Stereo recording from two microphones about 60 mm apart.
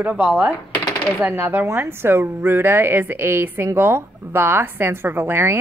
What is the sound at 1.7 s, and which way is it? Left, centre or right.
A woman's voice, right.